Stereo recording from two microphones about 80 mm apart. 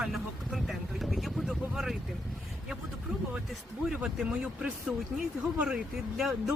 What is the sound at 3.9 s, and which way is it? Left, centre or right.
Speech, centre.